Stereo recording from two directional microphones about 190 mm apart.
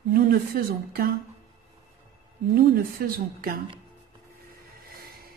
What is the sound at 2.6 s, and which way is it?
A woman's voice, 50° right (ahead or behind).